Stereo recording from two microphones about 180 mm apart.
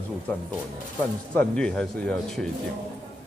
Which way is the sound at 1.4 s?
5° left (ahead or behind).